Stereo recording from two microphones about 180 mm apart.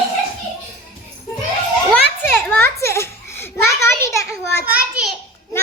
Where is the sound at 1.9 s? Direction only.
10° left (ahead or behind).